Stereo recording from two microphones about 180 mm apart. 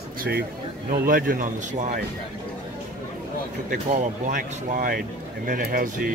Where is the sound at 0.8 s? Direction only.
55° right (ahead or behind).